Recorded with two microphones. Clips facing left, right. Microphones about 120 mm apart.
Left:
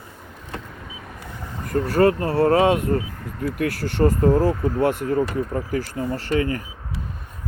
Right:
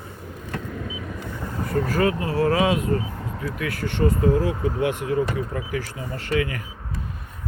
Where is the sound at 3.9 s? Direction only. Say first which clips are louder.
Left 2 dB; 40° left (ahead or behind).